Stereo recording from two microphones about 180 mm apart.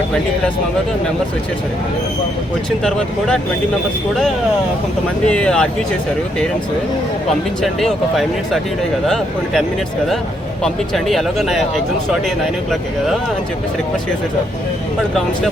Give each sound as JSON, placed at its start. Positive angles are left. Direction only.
{"t": 2.6, "sound": "speech", "side_deg": 5}
{"t": 5.2, "sound": "speech", "side_deg": 5}
{"t": 7.6, "sound": "speech", "side_deg": 0}